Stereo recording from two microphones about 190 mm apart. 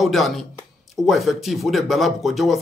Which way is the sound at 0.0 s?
Centre (ahead or behind).